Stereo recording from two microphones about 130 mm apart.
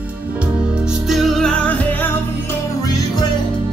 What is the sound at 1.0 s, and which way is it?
Music, centre (ahead or behind).